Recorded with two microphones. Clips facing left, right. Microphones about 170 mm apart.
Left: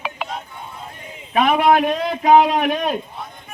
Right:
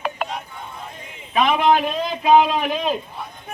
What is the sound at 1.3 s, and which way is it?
A man's voice, 50° left (ahead or behind).